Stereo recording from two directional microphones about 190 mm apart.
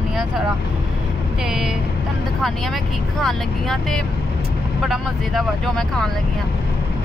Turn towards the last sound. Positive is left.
turn(degrees=5)  # may be behind; listen again after turning